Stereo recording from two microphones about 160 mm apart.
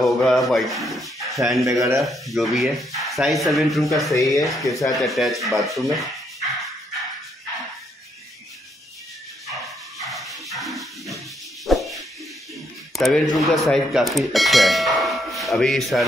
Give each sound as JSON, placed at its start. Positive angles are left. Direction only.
{"t": 0.0, "sound": "speech", "side_deg": 0}
{"t": 1.6, "sound": "speech", "side_deg": -20}
{"t": 2.0, "sound": "speech", "side_deg": 0}
{"t": 10.0, "sound": "a sound", "side_deg": 0}
{"t": 12.9, "sound": "speech", "side_deg": 0}